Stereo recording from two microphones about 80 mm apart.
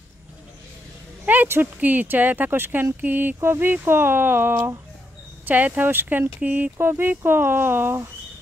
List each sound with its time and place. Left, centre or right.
1.2 s speech: right